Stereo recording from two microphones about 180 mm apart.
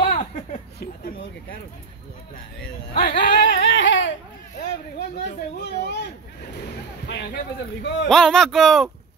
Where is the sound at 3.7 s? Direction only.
85° left.